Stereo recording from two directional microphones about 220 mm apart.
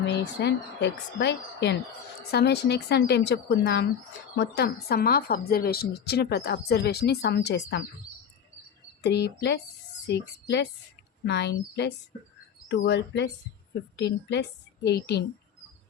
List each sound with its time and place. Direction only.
0.0 s a woman's voice: 50° left (ahead or behind)
9.0 s a woman's voice: 50° left (ahead or behind)
11.3 s a woman's voice: 50° left (ahead or behind)